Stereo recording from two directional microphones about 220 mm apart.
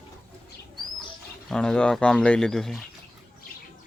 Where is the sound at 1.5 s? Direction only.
5° left (ahead or behind).